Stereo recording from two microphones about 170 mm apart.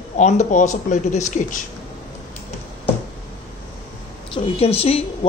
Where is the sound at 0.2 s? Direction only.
45° left (ahead or behind).